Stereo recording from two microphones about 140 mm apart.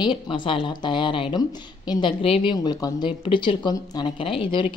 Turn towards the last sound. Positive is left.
turn(degrees=35)  # may be behind; listen again after turning